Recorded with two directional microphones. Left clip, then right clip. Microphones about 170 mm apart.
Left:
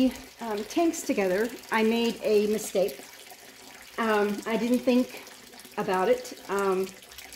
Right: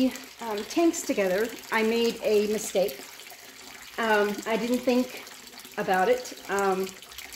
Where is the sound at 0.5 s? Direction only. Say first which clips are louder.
Right 1 dB; 40° left (ahead or behind).